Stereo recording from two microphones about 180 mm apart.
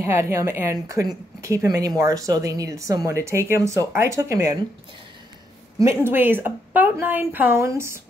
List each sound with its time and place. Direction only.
0.0 s speech: 15° right (ahead or behind)
5.8 s speech: 15° right (ahead or behind)